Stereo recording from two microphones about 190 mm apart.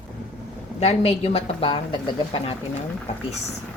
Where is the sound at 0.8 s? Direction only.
30° left (ahead or behind).